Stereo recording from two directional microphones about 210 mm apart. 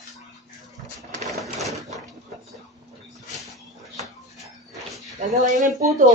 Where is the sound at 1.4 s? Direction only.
Centre (ahead or behind).